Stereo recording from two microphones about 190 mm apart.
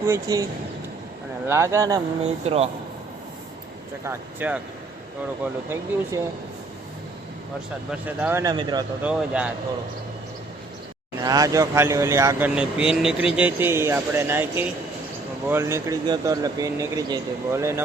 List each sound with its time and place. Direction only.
0.0 s speech: 15° right (ahead or behind)
1.5 s speech: 15° right (ahead or behind)
2.2 s speech: 35° right (ahead or behind)
4.0 s speech: 10° right (ahead or behind)
6.1 s speech: 15° right (ahead or behind)
7.9 s speech: 10° right (ahead or behind)
9.0 s speech: 5° right (ahead or behind)
11.2 s speech: 20° right (ahead or behind)